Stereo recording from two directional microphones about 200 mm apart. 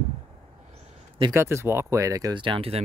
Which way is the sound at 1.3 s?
15° right (ahead or behind).